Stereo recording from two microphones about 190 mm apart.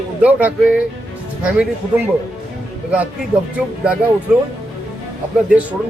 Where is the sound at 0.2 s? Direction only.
10° right (ahead or behind).